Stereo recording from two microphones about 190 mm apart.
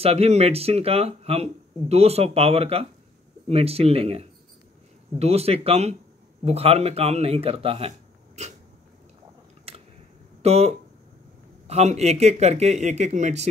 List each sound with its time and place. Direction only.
0.0 s speech: 35° right (ahead or behind)
9.7 s a sound: 30° right (ahead or behind)
10.4 s speech: 35° right (ahead or behind)